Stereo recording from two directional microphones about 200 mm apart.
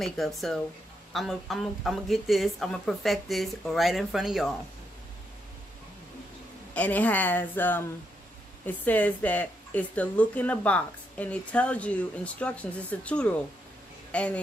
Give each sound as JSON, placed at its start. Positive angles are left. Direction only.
{"t": 0.0, "sound": "a woman's voice", "side_deg": 0}
{"t": 6.7, "sound": "a woman's voice", "side_deg": 5}